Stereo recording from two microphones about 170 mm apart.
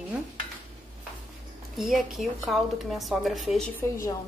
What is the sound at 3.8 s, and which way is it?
Speech, 20° left (ahead or behind).